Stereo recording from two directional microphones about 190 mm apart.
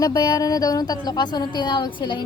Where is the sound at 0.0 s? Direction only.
20° left (ahead or behind).